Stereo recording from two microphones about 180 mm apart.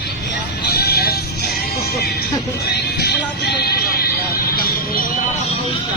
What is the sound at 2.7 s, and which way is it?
Music, 65° left (ahead or behind).